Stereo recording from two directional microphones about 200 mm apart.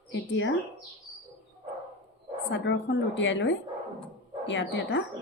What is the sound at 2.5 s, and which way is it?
Speech, 65° left (ahead or behind).